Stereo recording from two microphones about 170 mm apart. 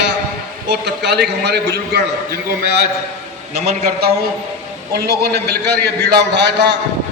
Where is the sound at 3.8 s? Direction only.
70° right (ahead or behind).